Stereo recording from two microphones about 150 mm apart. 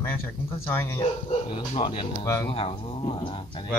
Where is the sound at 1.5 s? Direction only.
35° left (ahead or behind).